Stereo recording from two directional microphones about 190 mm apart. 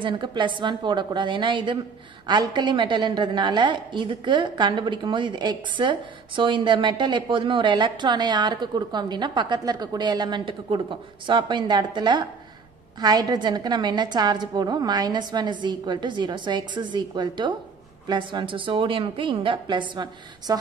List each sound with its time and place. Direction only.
0.0 s a woman's voice: 25° right (ahead or behind)